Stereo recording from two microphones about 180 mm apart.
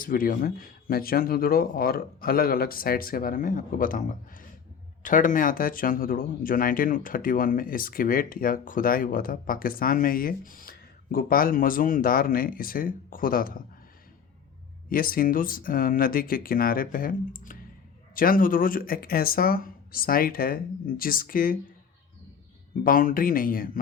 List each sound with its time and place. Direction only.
0.0 s speech: 50° left (ahead or behind)
14.8 s speech: 50° left (ahead or behind)
22.8 s speech: 50° left (ahead or behind)